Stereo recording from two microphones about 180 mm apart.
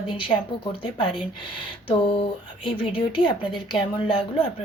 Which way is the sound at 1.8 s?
30° left (ahead or behind).